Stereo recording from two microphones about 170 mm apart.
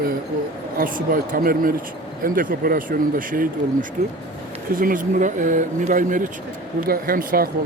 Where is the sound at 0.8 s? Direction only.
55° right (ahead or behind).